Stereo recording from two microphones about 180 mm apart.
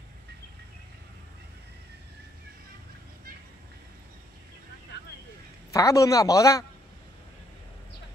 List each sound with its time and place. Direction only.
5.7 s a man's voice: 20° left (ahead or behind)